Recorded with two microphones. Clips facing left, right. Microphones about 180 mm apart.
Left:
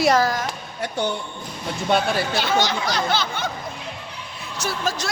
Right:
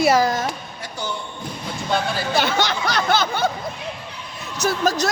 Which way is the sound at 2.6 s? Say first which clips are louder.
Right 1 dB; 65° right (ahead or behind).